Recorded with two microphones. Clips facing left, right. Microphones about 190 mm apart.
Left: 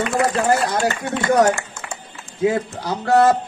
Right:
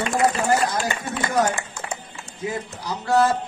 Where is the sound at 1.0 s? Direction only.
65° left (ahead or behind).